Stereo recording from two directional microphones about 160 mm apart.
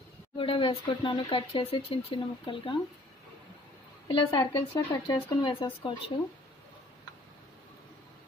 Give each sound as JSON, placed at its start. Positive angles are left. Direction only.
{"t": 0.4, "sound": "speech", "side_deg": 30}
{"t": 4.1, "sound": "speech", "side_deg": 30}